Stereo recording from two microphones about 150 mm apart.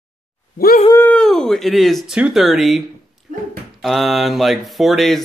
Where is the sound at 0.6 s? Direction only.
75° left (ahead or behind).